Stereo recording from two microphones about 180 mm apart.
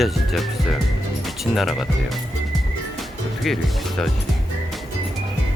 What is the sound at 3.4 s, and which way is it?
Speech, centre (ahead or behind).